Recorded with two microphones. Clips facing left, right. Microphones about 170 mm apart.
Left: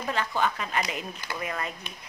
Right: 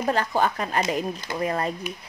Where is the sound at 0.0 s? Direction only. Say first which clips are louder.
Right 5 dB; 40° right (ahead or behind).